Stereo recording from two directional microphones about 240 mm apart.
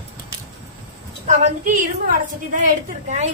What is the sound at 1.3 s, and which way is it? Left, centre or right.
A woman's voice, right.